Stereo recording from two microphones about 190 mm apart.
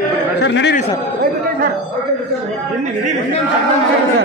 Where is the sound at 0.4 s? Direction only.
65° left (ahead or behind).